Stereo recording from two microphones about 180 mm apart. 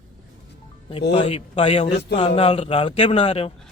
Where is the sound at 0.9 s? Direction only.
30° left (ahead or behind).